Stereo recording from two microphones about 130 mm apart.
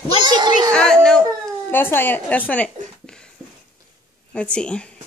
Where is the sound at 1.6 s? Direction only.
15° left (ahead or behind).